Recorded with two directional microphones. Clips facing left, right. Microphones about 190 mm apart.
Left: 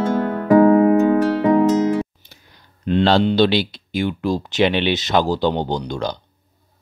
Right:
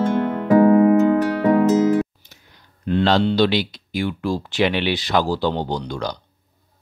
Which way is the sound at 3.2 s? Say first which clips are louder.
Left 2 dB; 25° left (ahead or behind).